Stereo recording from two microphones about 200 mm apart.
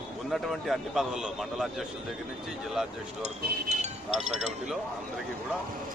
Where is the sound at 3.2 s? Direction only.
35° right (ahead or behind).